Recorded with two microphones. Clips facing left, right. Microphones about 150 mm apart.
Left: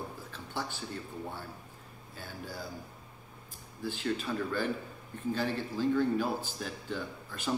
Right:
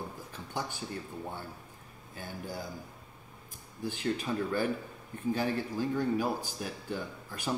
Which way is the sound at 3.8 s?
15° right (ahead or behind).